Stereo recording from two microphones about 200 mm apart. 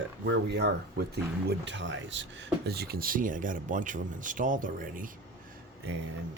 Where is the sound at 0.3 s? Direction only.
55° right (ahead or behind).